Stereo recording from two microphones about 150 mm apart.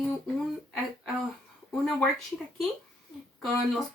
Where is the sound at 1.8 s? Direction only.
Centre (ahead or behind).